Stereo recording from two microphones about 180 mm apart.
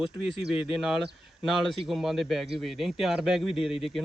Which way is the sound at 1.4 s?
Centre (ahead or behind).